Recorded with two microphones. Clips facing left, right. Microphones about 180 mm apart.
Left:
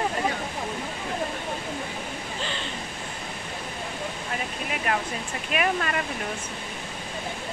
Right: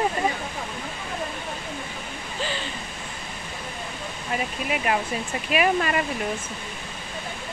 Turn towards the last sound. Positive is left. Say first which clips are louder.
# right 4 dB
turn(degrees=-10)  # may be behind; listen again after turning